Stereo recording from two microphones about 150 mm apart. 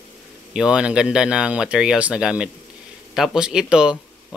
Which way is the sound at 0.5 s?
5° right (ahead or behind).